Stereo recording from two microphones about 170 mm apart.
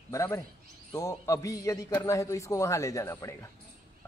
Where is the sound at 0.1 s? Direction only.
15° left (ahead or behind).